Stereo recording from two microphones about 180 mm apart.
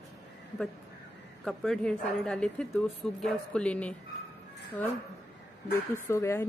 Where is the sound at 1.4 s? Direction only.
Centre (ahead or behind).